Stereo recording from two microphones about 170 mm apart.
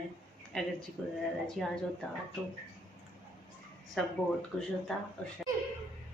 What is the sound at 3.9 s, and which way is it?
A woman's voice, centre (ahead or behind).